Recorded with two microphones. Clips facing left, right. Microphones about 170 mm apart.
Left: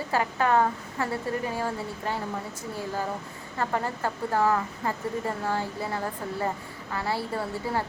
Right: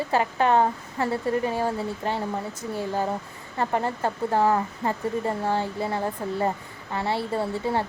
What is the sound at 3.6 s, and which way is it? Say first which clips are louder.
A woman's voice: right 3 dB; 25° right (ahead or behind).